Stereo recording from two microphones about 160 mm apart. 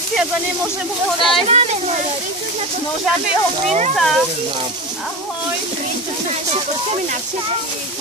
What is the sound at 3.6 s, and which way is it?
Speech, 45° right (ahead or behind).